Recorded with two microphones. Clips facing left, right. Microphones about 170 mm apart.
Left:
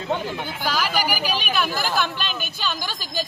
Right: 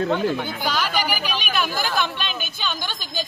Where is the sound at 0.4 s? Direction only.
5° left (ahead or behind).